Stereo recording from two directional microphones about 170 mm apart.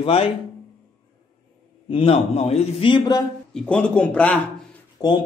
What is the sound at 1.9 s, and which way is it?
Speech, 35° left (ahead or behind).